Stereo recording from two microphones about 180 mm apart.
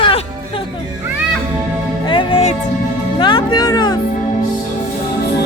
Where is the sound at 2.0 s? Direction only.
30° left (ahead or behind).